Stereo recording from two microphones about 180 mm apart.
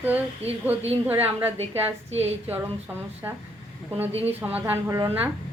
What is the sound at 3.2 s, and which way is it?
Speech, 20° right (ahead or behind).